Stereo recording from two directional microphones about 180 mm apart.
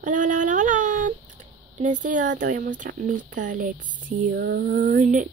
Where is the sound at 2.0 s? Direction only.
45° right (ahead or behind).